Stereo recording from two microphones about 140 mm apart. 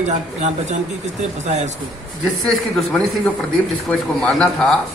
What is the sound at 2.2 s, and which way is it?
A man's voice, centre (ahead or behind).